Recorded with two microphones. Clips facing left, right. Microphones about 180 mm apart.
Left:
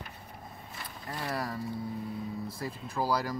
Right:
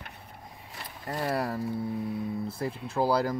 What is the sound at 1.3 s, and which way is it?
Speech, 30° right (ahead or behind).